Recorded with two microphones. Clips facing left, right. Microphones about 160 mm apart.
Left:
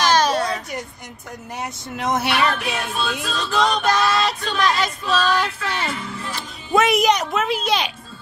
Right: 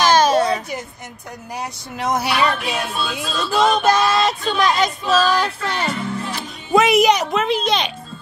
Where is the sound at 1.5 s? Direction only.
Centre (ahead or behind).